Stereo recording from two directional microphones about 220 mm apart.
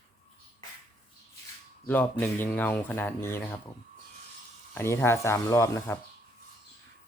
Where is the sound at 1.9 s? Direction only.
10° left (ahead or behind).